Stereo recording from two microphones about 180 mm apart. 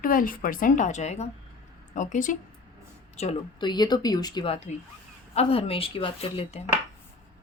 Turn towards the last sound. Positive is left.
turn(degrees=35)  # may be behind; listen again after turning